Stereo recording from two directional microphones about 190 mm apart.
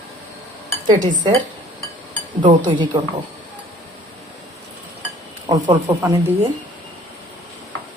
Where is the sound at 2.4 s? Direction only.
25° right (ahead or behind).